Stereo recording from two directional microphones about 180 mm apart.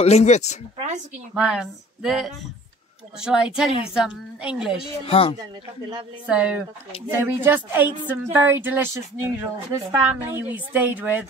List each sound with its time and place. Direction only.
0.0 s speech: 40° left (ahead or behind)
1.3 s a sound: 5° right (ahead or behind)
5.0 s speech: 30° left (ahead or behind)
6.2 s a woman's voice: 5° right (ahead or behind)